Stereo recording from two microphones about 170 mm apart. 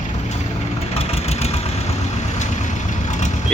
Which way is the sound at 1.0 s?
40° left (ahead or behind).